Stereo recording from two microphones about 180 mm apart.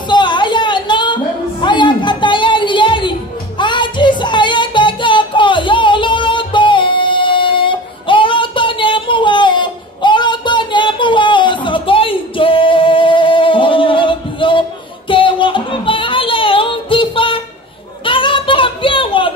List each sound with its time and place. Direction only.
0.1 s music: 25° left (ahead or behind)
15.0 s child singing: 30° left (ahead or behind)
18.0 s a sound: 30° left (ahead or behind)